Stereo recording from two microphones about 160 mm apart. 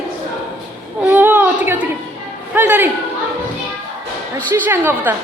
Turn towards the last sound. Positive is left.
turn(degrees=-10)  # may be behind; listen again after turning